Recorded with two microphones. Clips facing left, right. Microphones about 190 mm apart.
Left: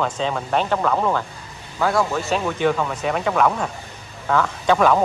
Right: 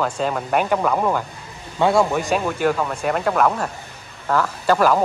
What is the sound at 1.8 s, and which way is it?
Speech, 25° right (ahead or behind).